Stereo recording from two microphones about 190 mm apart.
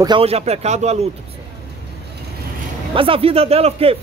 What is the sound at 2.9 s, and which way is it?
A man's voice, 30° right (ahead or behind).